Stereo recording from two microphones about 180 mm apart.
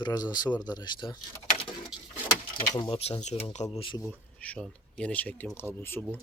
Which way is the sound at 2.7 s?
30° left (ahead or behind).